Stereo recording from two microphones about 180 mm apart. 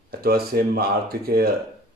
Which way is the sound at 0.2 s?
55° right (ahead or behind).